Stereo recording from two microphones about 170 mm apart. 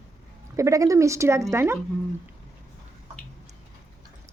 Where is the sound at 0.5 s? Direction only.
20° right (ahead or behind).